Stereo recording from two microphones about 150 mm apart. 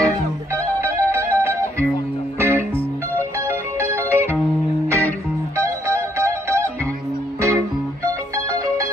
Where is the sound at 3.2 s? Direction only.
15° right (ahead or behind).